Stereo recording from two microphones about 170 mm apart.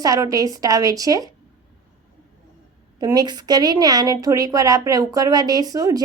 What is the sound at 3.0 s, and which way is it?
A woman's voice, 25° right (ahead or behind).